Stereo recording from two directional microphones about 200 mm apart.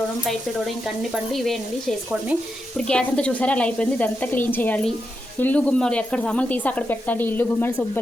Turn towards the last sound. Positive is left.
turn(degrees=10)  # may be behind; listen again after turning